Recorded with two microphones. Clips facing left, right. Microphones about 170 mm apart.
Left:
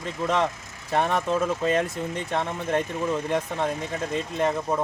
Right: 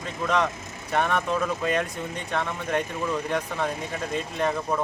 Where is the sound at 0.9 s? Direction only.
30° left (ahead or behind).